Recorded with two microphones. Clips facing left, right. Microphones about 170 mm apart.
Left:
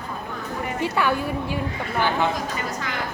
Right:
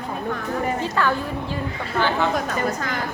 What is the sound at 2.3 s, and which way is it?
Speech, 50° right (ahead or behind).